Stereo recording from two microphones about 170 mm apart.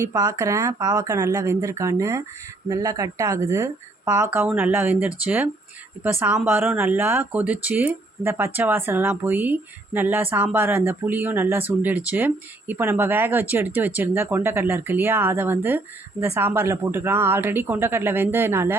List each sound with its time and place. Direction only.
0.0 s speech: 20° right (ahead or behind)